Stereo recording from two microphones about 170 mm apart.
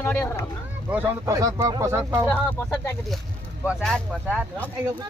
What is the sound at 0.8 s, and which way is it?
Speech, 10° right (ahead or behind).